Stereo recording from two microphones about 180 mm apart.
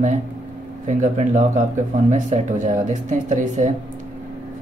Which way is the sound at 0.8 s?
45° right (ahead or behind).